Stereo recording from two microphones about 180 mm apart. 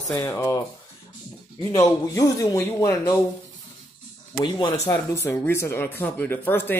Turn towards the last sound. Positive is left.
turn(degrees=10)  # may be behind; listen again after turning